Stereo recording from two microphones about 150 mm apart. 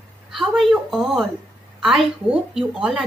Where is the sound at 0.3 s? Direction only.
Centre (ahead or behind).